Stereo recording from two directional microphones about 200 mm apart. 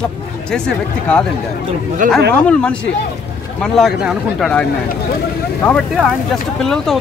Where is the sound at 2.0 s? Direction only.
40° right (ahead or behind).